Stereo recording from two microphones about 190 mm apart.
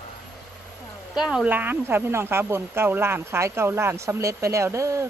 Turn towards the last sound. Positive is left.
turn(degrees=-15)  # may be behind; listen again after turning